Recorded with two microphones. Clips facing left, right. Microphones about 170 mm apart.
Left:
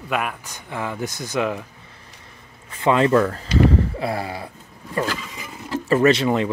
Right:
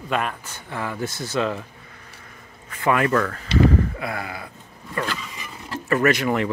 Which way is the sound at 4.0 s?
30° left (ahead or behind).